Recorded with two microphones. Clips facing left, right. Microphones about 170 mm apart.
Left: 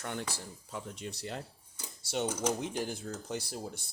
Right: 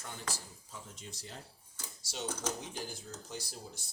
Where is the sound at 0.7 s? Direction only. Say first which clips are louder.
Left 9 dB; 65° left (ahead or behind).